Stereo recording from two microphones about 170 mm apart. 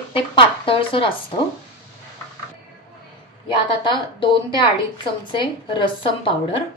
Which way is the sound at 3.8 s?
30° left (ahead or behind).